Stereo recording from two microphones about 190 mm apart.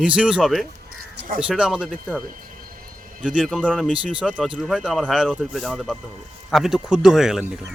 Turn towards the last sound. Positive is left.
turn(degrees=0)  # may be behind; listen again after turning